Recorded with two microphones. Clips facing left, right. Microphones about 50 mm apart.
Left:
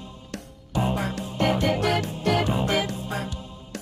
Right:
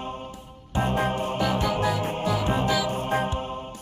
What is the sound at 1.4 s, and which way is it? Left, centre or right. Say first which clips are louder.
Music: left 4 dB; left.